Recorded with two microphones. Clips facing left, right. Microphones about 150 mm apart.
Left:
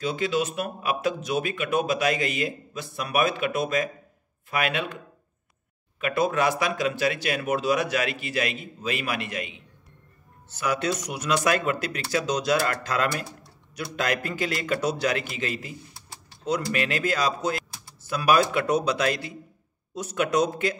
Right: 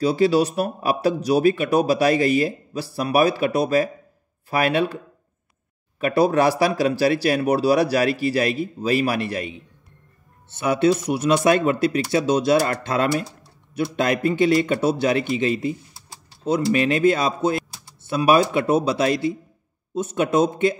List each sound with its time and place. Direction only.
0.0 s speech: 35° right (ahead or behind)
5.9 s speech: 35° right (ahead or behind)
10.5 s a man's voice: 25° right (ahead or behind)
14.3 s a man's voice: 30° right (ahead or behind)